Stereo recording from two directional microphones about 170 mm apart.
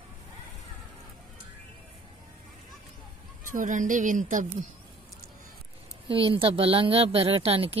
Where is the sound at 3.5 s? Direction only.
50° right (ahead or behind).